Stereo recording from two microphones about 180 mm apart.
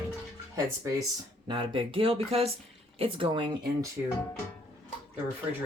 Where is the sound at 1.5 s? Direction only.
30° right (ahead or behind).